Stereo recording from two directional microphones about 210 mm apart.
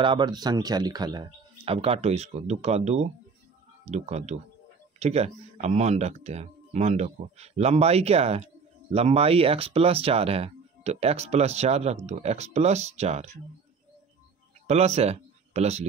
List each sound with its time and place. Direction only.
0.0 s speech: 20° right (ahead or behind)
14.7 s speech: 30° right (ahead or behind)